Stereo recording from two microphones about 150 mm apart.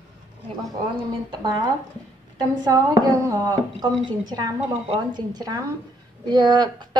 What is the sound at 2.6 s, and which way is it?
Speech, 25° right (ahead or behind).